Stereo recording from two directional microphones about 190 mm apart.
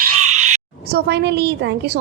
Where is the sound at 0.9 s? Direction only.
60° right (ahead or behind).